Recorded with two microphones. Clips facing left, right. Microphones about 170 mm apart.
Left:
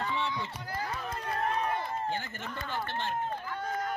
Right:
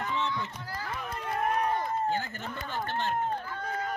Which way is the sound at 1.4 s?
15° right (ahead or behind).